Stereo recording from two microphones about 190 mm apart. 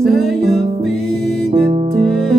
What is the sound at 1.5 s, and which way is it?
Music, 30° right (ahead or behind).